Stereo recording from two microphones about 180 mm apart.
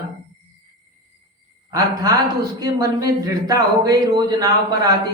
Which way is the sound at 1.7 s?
20° right (ahead or behind).